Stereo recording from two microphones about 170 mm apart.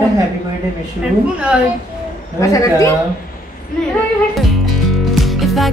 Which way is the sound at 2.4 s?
20° left (ahead or behind).